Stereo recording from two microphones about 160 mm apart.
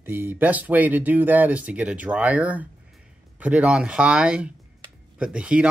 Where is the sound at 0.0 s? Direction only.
10° right (ahead or behind).